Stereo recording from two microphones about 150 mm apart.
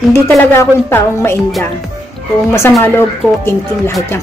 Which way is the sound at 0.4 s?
15° left (ahead or behind).